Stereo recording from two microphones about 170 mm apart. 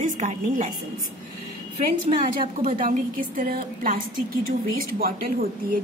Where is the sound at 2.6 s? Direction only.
50° right (ahead or behind).